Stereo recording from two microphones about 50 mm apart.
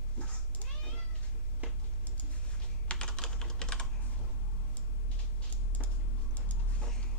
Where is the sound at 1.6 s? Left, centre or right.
Right.